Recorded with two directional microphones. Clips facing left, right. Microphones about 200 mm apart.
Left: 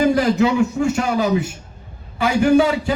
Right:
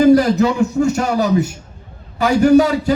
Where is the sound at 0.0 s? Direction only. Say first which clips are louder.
Right 5 dB; 40° right (ahead or behind).